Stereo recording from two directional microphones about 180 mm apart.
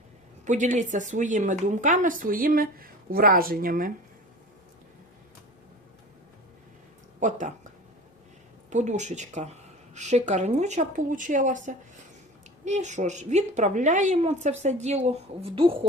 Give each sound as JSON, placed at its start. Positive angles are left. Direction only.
{"t": 0.4, "sound": "speech", "side_deg": -45}
{"t": 7.2, "sound": "speech", "side_deg": -45}
{"t": 8.7, "sound": "a woman's voice", "side_deg": -40}